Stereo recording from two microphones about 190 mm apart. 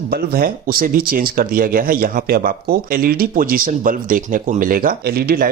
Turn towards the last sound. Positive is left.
turn(degrees=-55)  # may be behind; listen again after turning